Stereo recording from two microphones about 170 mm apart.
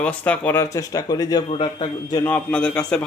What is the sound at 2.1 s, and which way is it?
Speech, 10° left (ahead or behind).